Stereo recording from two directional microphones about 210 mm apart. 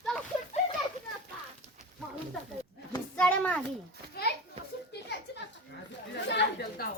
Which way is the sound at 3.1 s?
5° left (ahead or behind).